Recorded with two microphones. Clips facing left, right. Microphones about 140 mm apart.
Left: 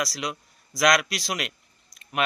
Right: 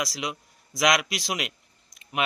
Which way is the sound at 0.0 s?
20° right (ahead or behind).